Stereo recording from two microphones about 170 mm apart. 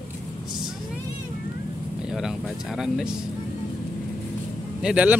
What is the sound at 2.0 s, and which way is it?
Speech, 5° right (ahead or behind).